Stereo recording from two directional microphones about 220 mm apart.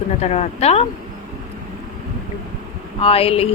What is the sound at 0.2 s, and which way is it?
Speech, 30° left (ahead or behind).